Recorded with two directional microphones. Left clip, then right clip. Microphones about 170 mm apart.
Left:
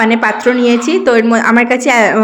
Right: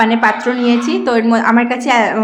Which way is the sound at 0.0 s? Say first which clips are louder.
Left 2 dB; 20° left (ahead or behind).